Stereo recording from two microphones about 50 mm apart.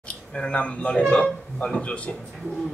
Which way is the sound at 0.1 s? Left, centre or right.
Left.